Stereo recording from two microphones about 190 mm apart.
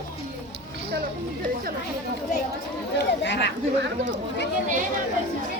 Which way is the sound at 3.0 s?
65° left (ahead or behind).